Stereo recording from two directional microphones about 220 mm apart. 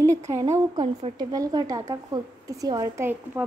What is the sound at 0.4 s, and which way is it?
A woman's voice, 15° right (ahead or behind).